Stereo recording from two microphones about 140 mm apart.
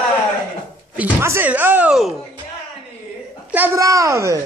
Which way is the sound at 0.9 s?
15° right (ahead or behind).